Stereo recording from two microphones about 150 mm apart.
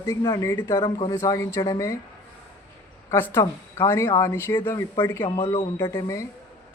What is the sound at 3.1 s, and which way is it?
A man's voice, 15° left (ahead or behind).